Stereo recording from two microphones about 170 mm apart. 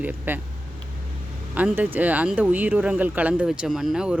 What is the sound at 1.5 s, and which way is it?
Speech, 10° right (ahead or behind).